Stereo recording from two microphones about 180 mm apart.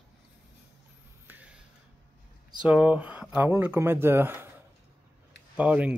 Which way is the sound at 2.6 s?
10° right (ahead or behind).